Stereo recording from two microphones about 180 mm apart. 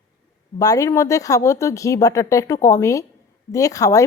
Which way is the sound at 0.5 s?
20° left (ahead or behind).